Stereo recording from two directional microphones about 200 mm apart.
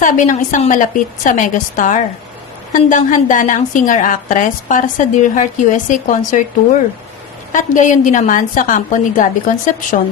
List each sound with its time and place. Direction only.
0.0 s a woman's voice: 40° left (ahead or behind)
7.5 s a woman's voice: 40° left (ahead or behind)